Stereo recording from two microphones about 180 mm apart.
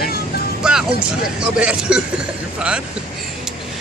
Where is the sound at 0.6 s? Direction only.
5° right (ahead or behind).